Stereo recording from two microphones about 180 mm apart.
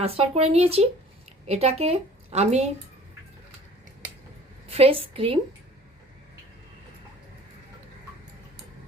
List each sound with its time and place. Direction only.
0.0 s a woman's voice: 35° right (ahead or behind)
4.7 s speech: 30° right (ahead or behind)